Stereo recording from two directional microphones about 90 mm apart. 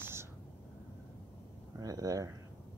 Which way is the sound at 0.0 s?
30° right (ahead or behind).